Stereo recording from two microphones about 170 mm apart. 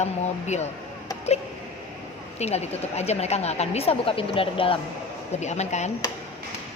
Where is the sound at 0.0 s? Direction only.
40° left (ahead or behind).